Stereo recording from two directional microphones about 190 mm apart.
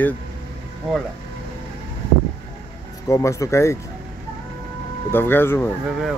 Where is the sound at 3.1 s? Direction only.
15° left (ahead or behind).